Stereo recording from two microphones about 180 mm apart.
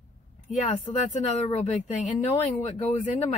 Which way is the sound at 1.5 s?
35° left (ahead or behind).